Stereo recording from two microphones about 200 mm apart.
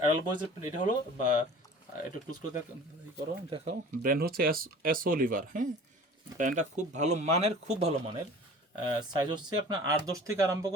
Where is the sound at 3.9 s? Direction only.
45° right (ahead or behind).